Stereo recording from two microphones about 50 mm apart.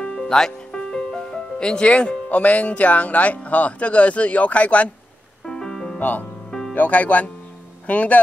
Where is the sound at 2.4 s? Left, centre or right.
Left.